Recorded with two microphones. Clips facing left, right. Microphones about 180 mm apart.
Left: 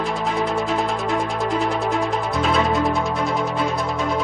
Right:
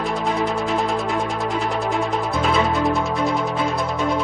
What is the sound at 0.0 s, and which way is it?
Music, centre (ahead or behind).